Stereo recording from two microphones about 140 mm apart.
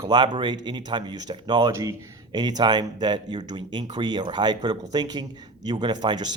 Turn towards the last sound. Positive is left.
turn(degrees=-30)  # may be behind; listen again after turning